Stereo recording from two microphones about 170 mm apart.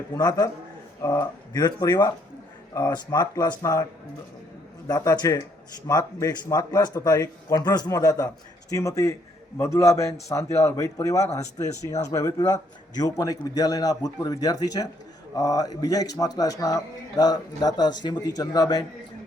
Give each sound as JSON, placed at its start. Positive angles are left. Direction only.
{"t": 0.2, "sound": "a man's voice", "side_deg": 20}
{"t": 4.9, "sound": "a man's voice", "side_deg": 20}
{"t": 11.2, "sound": "speech", "side_deg": 40}
{"t": 11.5, "sound": "a man's voice", "side_deg": 20}